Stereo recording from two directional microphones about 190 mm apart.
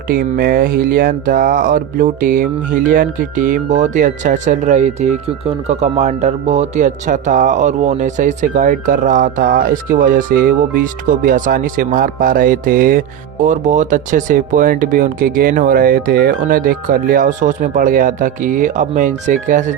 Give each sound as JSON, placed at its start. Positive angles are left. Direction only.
{"t": 0.1, "sound": "speech", "side_deg": -45}